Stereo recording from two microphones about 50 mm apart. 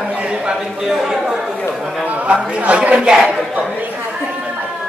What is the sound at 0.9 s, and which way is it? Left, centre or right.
Speech, centre.